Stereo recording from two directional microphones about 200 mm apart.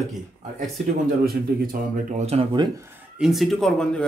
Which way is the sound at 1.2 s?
45° right (ahead or behind).